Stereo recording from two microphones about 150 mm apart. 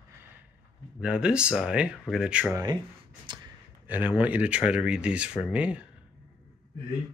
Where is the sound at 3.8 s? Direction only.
10° right (ahead or behind).